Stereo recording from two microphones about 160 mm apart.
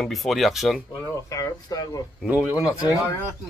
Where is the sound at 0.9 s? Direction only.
20° left (ahead or behind).